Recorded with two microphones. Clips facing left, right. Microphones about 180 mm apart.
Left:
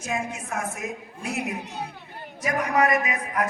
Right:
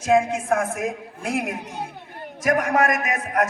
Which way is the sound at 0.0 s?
70° right (ahead or behind).